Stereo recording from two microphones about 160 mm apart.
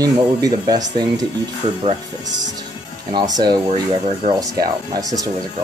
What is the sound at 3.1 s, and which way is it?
Speech, 25° right (ahead or behind).